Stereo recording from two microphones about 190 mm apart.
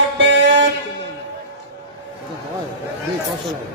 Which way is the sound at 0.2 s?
65° right (ahead or behind).